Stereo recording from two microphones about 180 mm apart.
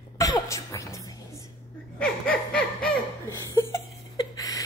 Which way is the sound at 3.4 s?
15° left (ahead or behind).